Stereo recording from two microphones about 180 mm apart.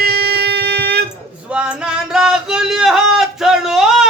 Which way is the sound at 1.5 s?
5° right (ahead or behind).